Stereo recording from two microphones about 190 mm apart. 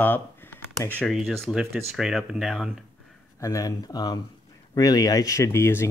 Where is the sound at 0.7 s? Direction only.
10° right (ahead or behind).